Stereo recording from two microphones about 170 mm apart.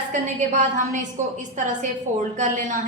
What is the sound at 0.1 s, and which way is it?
A woman's voice, 45° right (ahead or behind).